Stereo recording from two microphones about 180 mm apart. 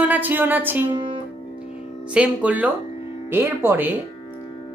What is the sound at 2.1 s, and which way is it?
Speech, 5° right (ahead or behind).